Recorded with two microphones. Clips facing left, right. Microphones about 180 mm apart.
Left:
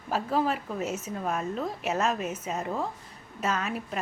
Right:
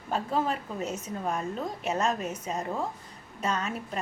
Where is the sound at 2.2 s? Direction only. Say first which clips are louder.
Left 1 dB; 35° right (ahead or behind).